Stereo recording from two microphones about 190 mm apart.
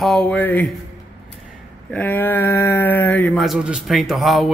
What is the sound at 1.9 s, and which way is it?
Speech, 10° left (ahead or behind).